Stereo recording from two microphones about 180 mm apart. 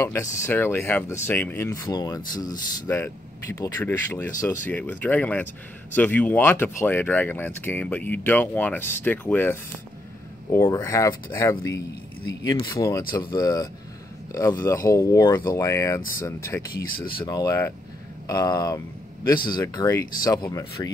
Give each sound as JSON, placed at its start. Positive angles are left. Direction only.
{"t": 0.0, "sound": "speech", "side_deg": 15}